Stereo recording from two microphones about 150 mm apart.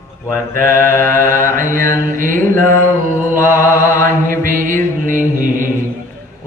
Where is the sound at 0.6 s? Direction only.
65° right (ahead or behind).